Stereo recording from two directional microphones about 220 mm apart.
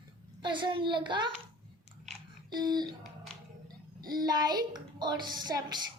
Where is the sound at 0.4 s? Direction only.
20° right (ahead or behind).